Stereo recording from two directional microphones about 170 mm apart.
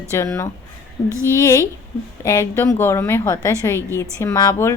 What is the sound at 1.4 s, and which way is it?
A woman's voice, 15° left (ahead or behind).